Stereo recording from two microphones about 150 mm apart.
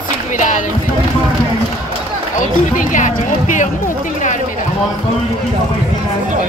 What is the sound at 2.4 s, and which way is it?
Speech, 60° left (ahead or behind).